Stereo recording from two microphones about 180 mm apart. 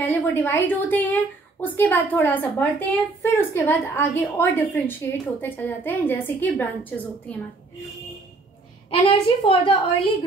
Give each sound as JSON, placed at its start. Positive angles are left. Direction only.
{"t": 0.0, "sound": "a woman's voice", "side_deg": 10}
{"t": 9.0, "sound": "a woman's voice", "side_deg": 30}